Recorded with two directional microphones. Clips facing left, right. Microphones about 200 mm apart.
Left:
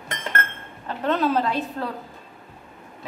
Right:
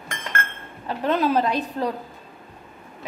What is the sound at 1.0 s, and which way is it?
Speech, 10° right (ahead or behind).